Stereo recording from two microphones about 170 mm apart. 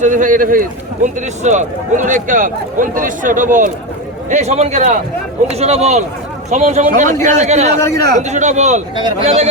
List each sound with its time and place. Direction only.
0.0 s a man's voice: 50° right (ahead or behind)